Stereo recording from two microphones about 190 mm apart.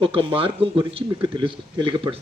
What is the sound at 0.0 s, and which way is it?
Speech, 25° right (ahead or behind).